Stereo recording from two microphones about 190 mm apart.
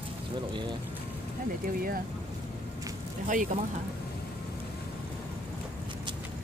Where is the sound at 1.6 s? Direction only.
50° right (ahead or behind).